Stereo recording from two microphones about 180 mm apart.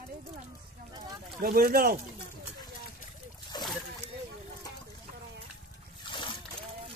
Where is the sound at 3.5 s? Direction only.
25° left (ahead or behind).